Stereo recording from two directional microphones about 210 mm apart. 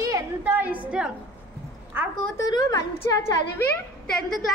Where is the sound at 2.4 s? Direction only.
20° left (ahead or behind).